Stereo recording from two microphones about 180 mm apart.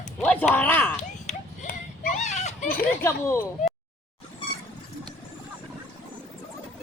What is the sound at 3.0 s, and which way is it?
Speech, 15° left (ahead or behind).